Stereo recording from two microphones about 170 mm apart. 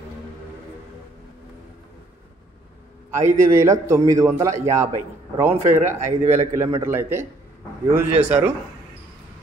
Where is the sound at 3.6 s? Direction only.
20° right (ahead or behind).